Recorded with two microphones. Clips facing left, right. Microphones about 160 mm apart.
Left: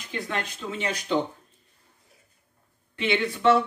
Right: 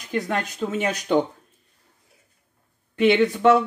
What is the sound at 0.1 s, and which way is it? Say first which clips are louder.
Speech: right 6 dB; 45° right (ahead or behind).